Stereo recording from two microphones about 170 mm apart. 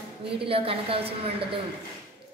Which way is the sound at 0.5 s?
35° right (ahead or behind).